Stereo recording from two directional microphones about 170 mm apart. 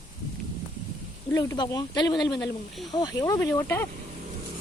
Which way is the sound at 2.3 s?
Centre (ahead or behind).